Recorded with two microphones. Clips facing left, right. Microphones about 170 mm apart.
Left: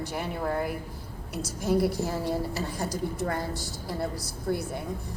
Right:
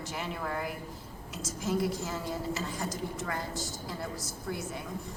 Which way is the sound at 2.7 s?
35° left (ahead or behind).